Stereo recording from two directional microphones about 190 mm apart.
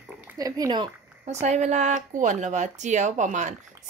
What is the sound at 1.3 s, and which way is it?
Speech, 35° right (ahead or behind).